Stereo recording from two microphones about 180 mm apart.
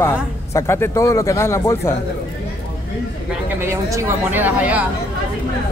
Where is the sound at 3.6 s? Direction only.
15° right (ahead or behind).